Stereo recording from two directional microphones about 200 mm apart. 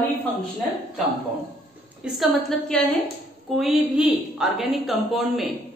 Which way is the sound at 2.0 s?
Centre (ahead or behind).